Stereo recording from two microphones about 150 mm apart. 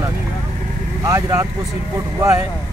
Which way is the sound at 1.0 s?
20° right (ahead or behind).